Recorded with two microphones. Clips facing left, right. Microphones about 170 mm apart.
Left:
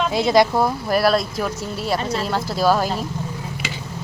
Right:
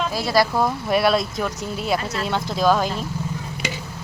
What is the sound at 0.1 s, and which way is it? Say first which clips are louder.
Speech: left 5 dB; 20° left (ahead or behind).